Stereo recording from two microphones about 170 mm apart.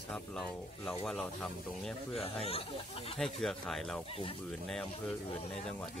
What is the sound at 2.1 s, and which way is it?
Speech, 35° left (ahead or behind).